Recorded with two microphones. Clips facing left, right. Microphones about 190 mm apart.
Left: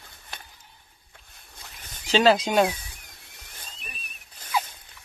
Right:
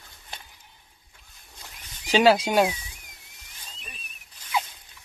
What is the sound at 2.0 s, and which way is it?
Speech, 10° right (ahead or behind).